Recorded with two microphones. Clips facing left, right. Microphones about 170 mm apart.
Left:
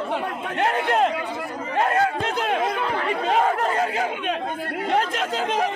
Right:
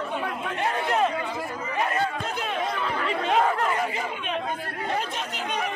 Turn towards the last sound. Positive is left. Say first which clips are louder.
# left 7 dB
turn(degrees=90)